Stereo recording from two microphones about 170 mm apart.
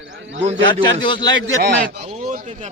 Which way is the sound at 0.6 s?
25° left (ahead or behind).